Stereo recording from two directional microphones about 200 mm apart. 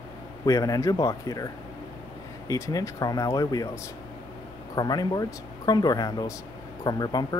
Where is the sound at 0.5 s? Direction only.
15° left (ahead or behind).